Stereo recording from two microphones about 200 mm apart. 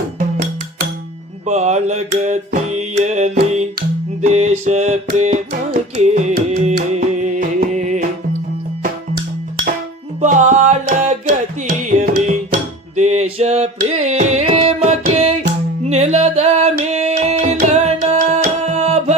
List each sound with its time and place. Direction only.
1.5 s mantra: 35° right (ahead or behind)
3.8 s music: 35° right (ahead or behind)
5.1 s carnatic music: 35° right (ahead or behind)
6.0 s music: 35° right (ahead or behind)
10.2 s music: 40° right (ahead or behind)